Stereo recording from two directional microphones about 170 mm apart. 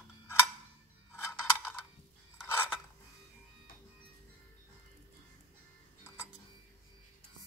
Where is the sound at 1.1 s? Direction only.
15° left (ahead or behind).